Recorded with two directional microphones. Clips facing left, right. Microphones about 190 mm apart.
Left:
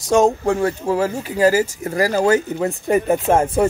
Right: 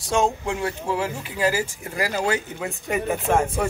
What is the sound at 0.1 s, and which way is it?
Speech, 40° left (ahead or behind).